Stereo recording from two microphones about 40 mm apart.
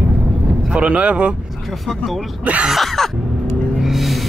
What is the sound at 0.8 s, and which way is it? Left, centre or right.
Speech, right.